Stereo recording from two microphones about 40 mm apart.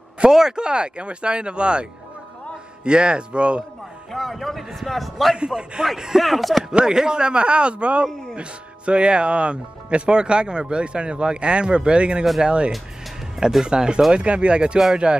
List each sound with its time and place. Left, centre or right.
0.3 s speech: centre
4.1 s a man's voice: centre
5.4 s speech: right
6.2 s a man's voice: centre
6.9 s speech: centre